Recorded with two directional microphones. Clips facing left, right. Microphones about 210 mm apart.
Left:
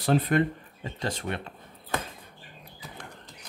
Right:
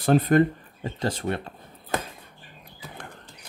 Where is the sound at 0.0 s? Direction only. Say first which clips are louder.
Right 5 dB; 45° right (ahead or behind).